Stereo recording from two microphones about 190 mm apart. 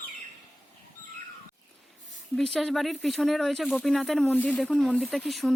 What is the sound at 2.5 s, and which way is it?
Speech, centre (ahead or behind).